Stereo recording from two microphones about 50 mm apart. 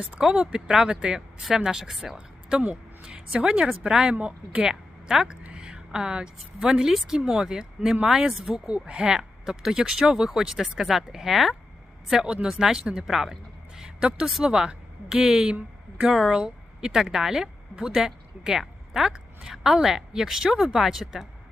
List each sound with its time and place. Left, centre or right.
0.2 s speech: centre
2.1 s speech: right
4.1 s speech: right
4.7 s a woman's voice: centre
5.4 s a woman's voice: right; by 11.5 s centre
12.2 s a woman's voice: centre
18.6 s a sound: centre
19.1 s a woman's voice: centre